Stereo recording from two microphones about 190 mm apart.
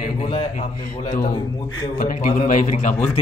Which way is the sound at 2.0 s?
50° left (ahead or behind).